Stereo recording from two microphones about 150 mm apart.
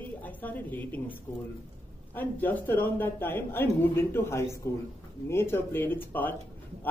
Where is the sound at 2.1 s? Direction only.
10° left (ahead or behind).